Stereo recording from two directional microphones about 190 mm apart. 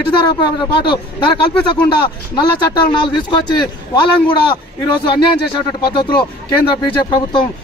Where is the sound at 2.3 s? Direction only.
25° left (ahead or behind).